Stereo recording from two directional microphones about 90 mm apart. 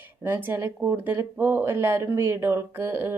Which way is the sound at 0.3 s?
20° right (ahead or behind).